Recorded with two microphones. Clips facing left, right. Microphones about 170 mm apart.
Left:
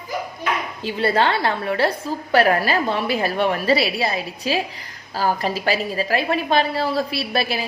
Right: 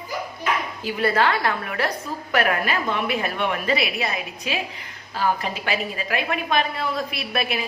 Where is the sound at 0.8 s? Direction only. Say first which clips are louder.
Left 2 dB; 30° left (ahead or behind).